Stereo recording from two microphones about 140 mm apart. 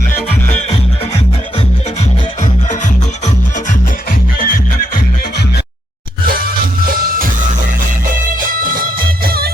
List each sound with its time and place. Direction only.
4.4 s music: 90° left
6.2 s music: 90° right
8.4 s music: 75° right (ahead or behind)